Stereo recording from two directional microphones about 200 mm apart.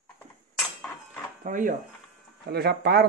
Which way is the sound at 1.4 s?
40° right (ahead or behind).